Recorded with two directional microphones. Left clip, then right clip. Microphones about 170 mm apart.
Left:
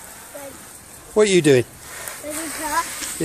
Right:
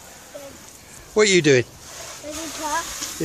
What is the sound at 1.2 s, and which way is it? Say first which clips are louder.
Speech: left 1 dB; 10° left (ahead or behind).